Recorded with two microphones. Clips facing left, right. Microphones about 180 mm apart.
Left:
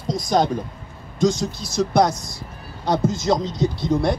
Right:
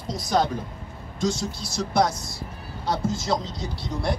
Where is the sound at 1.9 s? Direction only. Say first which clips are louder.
Left 3 dB; 20° left (ahead or behind).